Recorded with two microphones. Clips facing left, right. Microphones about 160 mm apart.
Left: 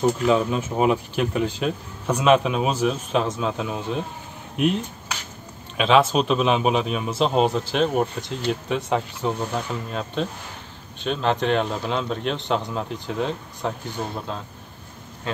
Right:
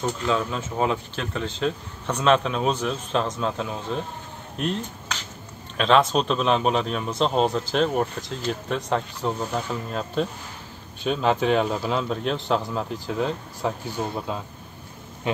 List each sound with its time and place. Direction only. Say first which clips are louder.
0.0 s speech: left 5 dB; 15° left (ahead or behind); by 14.4 s 5° right (ahead or behind)
15.3 s speech: right 3 dB; 20° right (ahead or behind)